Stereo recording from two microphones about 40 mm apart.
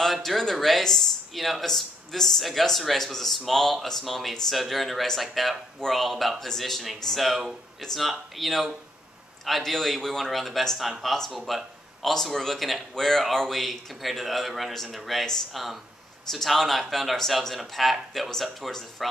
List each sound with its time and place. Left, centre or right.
0.0 s speech: centre